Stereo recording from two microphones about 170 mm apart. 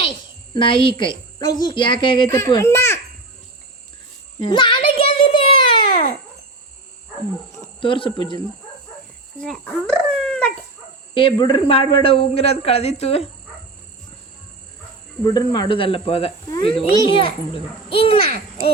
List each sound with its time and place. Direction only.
0.5 s speech: 30° left (ahead or behind); by 3.0 s 15° left (ahead or behind)
4.4 s a sound: 30° left (ahead or behind)
7.8 s a man's voice: 30° left (ahead or behind)
9.4 s speech: 5° left (ahead or behind)
11.1 s a man's voice: 30° left (ahead or behind)
15.2 s a man's voice: 25° left (ahead or behind)